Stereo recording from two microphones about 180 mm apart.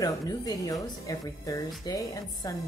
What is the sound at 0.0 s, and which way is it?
Speech, 20° left (ahead or behind).